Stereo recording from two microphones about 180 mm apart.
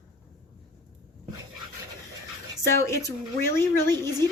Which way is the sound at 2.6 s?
15° left (ahead or behind).